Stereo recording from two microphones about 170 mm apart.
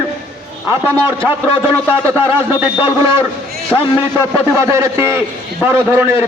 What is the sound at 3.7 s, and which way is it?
Speech, 10° left (ahead or behind).